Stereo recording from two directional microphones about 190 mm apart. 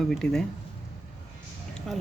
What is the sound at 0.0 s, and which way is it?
Speech, 5° left (ahead or behind).